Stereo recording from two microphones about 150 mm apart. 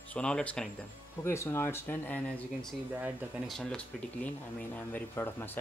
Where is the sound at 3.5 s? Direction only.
5° left (ahead or behind).